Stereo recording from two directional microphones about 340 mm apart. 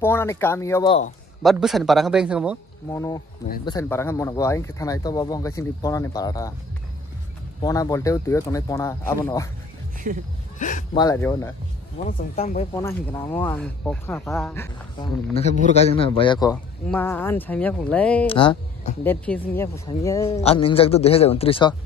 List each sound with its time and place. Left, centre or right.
0.0 s speech: centre
2.9 s speech: centre
7.6 s speech: centre
10.1 s speech: right
10.6 s speech: left
11.0 s speech: centre
12.1 s speech: left; by 15.0 s centre
15.3 s speech: centre
18.2 s speech: centre
19.2 s speech: centre